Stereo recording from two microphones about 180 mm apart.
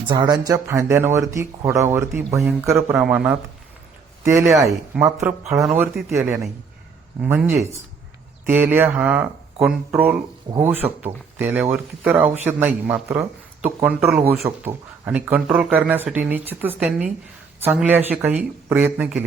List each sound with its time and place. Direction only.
0.0 s a man's voice: 25° right (ahead or behind)
5.6 s speech: 5° right (ahead or behind)